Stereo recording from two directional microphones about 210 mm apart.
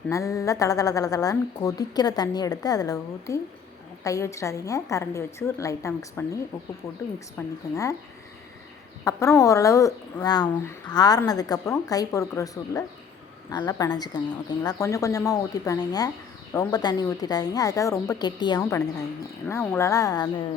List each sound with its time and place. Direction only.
0.1 s a woman's voice: 15° left (ahead or behind)
9.0 s a woman's voice: 15° left (ahead or behind)